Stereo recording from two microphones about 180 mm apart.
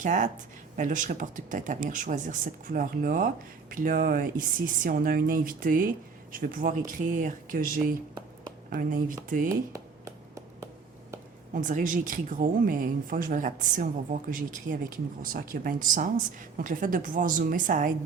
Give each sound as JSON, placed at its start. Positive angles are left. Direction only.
{"t": 0.0, "sound": "a woman's voice", "side_deg": -45}
{"t": 11.5, "sound": "a woman's voice", "side_deg": -45}